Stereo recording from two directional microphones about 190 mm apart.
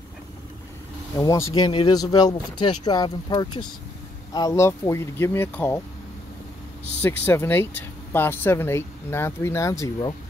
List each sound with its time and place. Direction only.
1.1 s speech: 15° left (ahead or behind)
7.0 s speech: 10° left (ahead or behind)